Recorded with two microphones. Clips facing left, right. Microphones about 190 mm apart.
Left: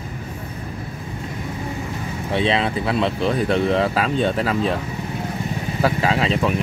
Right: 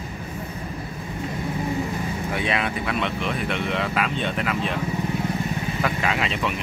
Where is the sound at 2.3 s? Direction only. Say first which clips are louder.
Left 7 dB; 25° left (ahead or behind).